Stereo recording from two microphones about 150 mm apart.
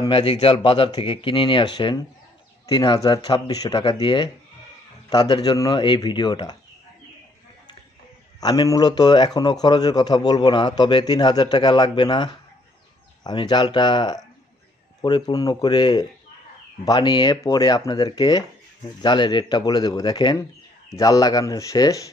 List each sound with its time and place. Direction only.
0.1 s a man's voice: 35° left (ahead or behind)
8.4 s a man's voice: 30° left (ahead or behind)